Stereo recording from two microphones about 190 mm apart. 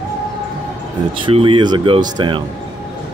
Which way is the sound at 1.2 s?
25° right (ahead or behind).